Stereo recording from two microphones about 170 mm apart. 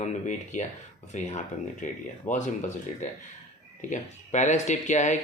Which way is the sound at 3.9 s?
45° left (ahead or behind).